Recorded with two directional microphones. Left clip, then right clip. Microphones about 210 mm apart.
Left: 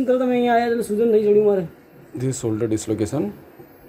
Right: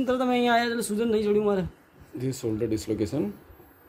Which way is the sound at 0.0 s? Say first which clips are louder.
Left 6 dB; 40° right (ahead or behind).